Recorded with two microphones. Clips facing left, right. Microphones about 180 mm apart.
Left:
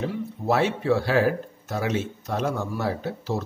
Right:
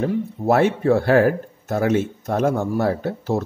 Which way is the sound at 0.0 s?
50° right (ahead or behind).